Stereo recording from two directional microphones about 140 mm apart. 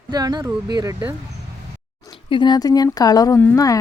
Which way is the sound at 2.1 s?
35° left (ahead or behind).